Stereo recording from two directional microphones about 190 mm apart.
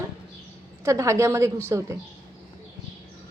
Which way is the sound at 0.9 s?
15° right (ahead or behind).